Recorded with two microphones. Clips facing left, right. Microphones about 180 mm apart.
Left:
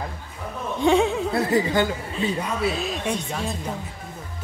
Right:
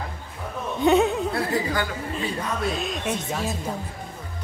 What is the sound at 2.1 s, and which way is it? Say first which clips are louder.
Speech: left 2 dB; centre (ahead or behind).